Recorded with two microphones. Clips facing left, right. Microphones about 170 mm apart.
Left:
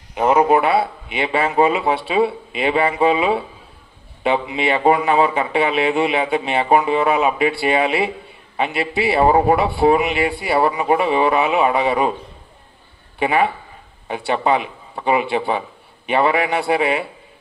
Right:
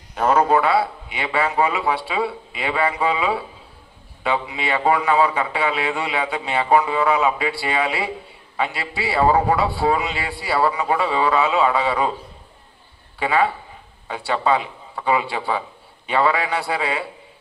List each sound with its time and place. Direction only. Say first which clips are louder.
0.1 s speech: left 3 dB; 20° left (ahead or behind)
13.2 s speech: left 2 dB; 20° left (ahead or behind)